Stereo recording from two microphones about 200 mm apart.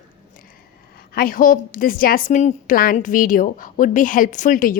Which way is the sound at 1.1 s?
45° left (ahead or behind).